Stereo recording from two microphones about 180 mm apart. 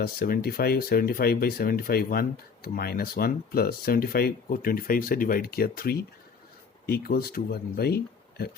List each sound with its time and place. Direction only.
0.0 s speech: 60° left (ahead or behind)